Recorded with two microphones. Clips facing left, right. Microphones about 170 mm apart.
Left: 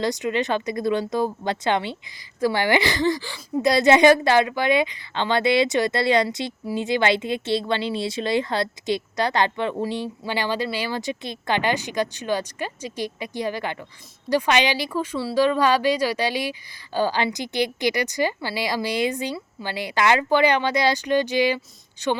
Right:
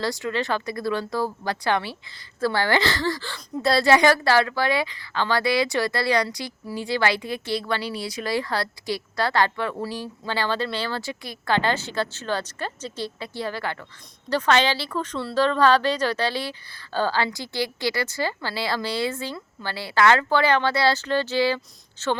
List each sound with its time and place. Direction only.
0.0 s speech: 20° left (ahead or behind)